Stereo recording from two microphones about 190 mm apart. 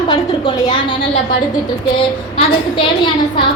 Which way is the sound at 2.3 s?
25° left (ahead or behind).